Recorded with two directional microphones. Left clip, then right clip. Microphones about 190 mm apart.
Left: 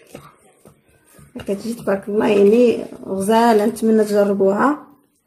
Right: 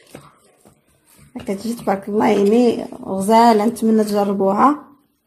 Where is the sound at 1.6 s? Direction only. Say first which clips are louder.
Right 2 dB; 35° right (ahead or behind).